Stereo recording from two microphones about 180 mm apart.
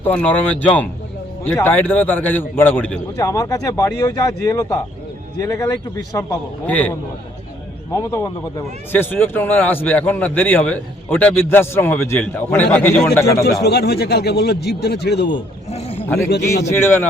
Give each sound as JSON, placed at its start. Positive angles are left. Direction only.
{"t": 0.0, "sound": "a man's voice", "side_deg": 10}
{"t": 7.9, "sound": "a man's voice", "side_deg": 15}
{"t": 13.4, "sound": "speech", "side_deg": 65}
{"t": 15.3, "sound": "speech", "side_deg": 35}
{"t": 16.0, "sound": "a sound", "side_deg": 10}
{"t": 16.7, "sound": "a man's voice", "side_deg": 10}